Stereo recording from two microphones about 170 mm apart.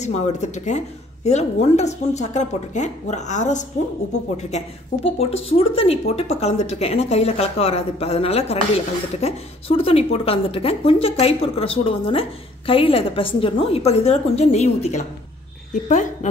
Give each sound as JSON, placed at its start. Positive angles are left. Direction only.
{"t": 0.0, "sound": "a woman's voice", "side_deg": 40}